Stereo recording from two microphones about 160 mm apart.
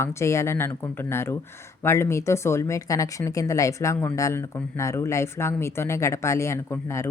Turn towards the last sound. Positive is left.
turn(degrees=15)  # may be behind; listen again after turning